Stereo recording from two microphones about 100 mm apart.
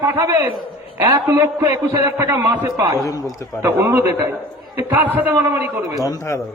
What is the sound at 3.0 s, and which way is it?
Speech, 35° left (ahead or behind).